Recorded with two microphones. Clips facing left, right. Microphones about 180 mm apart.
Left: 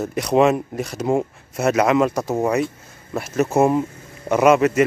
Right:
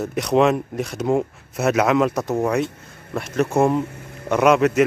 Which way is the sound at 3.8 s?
65° right (ahead or behind).